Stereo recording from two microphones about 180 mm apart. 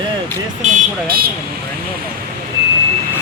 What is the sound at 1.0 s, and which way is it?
Speech, 55° right (ahead or behind).